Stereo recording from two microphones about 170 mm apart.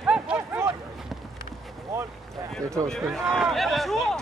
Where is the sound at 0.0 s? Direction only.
5° right (ahead or behind).